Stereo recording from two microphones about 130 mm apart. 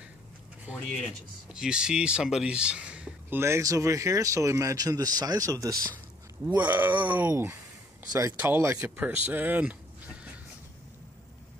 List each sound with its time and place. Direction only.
0.7 s a sound: 10° right (ahead or behind)
1.0 s speech: 5° right (ahead or behind); by 5.8 s 25° right (ahead or behind)
6.4 s speech: 10° right (ahead or behind)
8.1 s speech: 25° right (ahead or behind)